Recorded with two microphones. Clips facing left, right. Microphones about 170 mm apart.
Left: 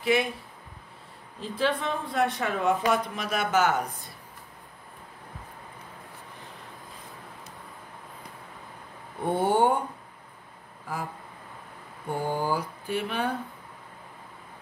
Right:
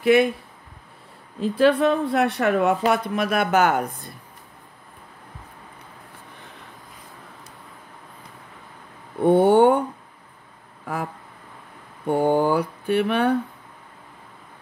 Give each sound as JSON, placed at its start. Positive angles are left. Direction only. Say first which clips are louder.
{"t": 0.0, "sound": "speech", "louder": "right 8 dB", "side_deg": -60}
{"t": 1.4, "sound": "speech", "louder": "right 10 dB", "side_deg": -65}
{"t": 9.3, "sound": "speech", "louder": "right 8 dB", "side_deg": -65}
{"t": 12.1, "sound": "speech", "louder": "right 9 dB", "side_deg": -65}